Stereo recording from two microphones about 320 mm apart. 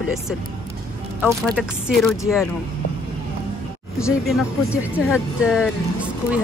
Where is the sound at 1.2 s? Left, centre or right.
Centre.